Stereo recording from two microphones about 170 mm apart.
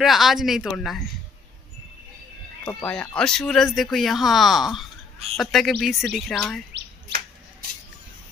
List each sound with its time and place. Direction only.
0.0 s speech: centre (ahead or behind)
2.6 s speech: 5° left (ahead or behind)